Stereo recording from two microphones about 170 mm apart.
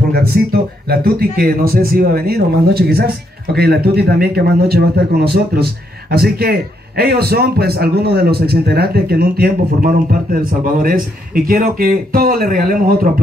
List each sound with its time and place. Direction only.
0.1 s a man's voice: 65° right (ahead or behind)